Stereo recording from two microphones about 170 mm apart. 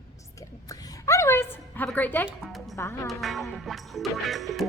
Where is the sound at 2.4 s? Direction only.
Centre (ahead or behind).